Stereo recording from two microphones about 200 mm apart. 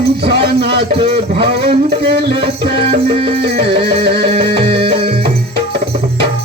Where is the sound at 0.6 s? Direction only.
55° right (ahead or behind).